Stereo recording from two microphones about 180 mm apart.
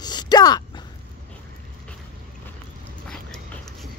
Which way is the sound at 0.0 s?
25° left (ahead or behind).